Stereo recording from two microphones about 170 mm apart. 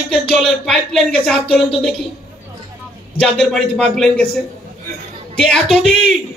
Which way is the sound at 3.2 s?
Centre (ahead or behind).